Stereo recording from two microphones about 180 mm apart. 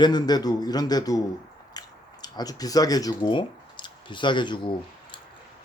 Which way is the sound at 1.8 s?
20° left (ahead or behind).